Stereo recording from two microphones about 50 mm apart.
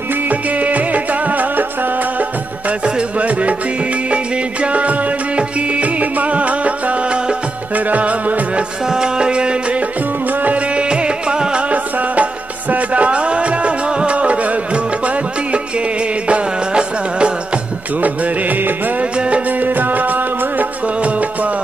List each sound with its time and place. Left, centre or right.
0.1 s music: right
2.8 s music: right
8.8 s music: centre
11.7 s music: right
18.0 s music: right
19.1 s music: right
19.6 s music: right